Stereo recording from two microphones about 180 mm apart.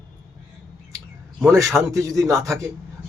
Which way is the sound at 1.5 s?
15° right (ahead or behind).